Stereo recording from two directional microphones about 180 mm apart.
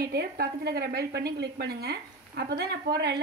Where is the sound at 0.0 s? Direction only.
60° right (ahead or behind).